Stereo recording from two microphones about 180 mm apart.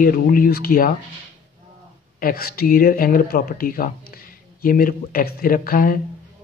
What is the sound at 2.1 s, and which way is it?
Speech, 55° left (ahead or behind).